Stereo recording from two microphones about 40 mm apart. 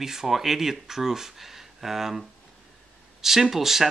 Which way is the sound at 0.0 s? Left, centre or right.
Centre.